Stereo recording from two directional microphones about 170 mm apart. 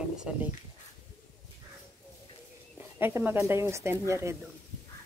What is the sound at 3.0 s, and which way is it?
Speech, 10° right (ahead or behind).